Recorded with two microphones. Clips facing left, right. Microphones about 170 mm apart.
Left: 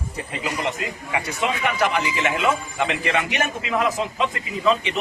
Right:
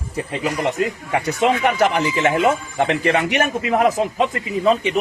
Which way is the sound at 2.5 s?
50° right (ahead or behind).